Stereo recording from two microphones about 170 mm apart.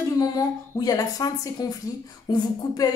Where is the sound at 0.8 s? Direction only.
20° left (ahead or behind).